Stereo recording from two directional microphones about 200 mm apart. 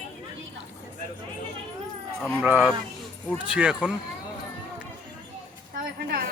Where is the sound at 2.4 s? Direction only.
5° right (ahead or behind).